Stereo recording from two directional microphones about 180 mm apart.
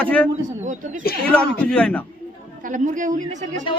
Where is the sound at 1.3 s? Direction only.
5° left (ahead or behind).